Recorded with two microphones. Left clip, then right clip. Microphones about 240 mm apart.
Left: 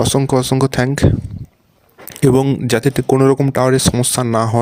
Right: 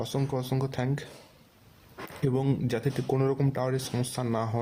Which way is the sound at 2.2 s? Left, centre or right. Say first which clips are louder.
Left 16 dB; left.